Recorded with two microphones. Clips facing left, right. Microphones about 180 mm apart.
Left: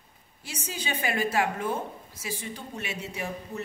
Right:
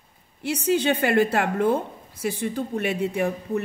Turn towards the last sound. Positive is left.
turn(degrees=-55)  # may be behind; listen again after turning